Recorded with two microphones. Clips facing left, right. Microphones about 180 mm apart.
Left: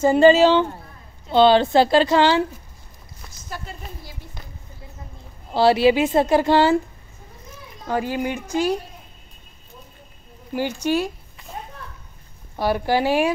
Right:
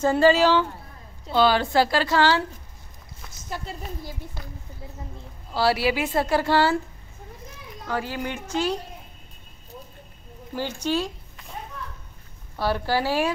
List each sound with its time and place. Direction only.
0.0 s a woman's voice: 20° left (ahead or behind)
3.4 s a sound: 25° right (ahead or behind)
5.5 s a woman's voice: 25° left (ahead or behind)
7.8 s speech: 15° left (ahead or behind)
10.5 s speech: 15° left (ahead or behind)
12.5 s speech: 15° left (ahead or behind)